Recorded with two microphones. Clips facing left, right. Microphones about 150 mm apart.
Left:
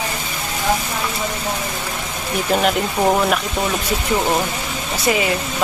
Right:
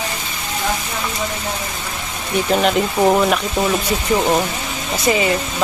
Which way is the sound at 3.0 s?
10° left (ahead or behind).